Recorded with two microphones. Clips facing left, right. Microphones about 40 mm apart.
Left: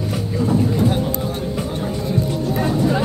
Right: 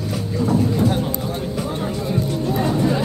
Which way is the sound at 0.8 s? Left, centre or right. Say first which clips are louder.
Left 1 dB; centre.